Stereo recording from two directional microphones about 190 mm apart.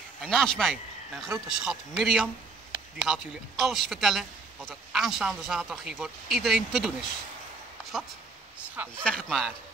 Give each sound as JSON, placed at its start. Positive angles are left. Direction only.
{"t": 0.2, "sound": "a man's voice", "side_deg": 5}
{"t": 9.0, "sound": "a man's voice", "side_deg": 0}